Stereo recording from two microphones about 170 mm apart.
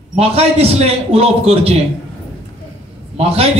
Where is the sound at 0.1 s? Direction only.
35° right (ahead or behind).